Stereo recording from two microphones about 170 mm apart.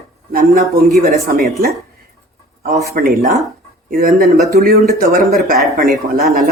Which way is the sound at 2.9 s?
60° right (ahead or behind).